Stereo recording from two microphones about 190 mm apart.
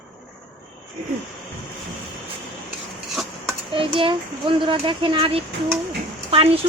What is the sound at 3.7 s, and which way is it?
A child's voice, 25° right (ahead or behind).